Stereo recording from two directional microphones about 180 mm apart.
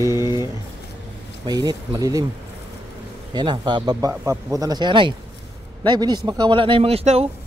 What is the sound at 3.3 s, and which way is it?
A man's voice, 25° right (ahead or behind).